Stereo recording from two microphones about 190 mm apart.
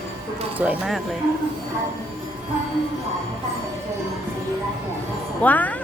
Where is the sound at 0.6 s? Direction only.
5° right (ahead or behind).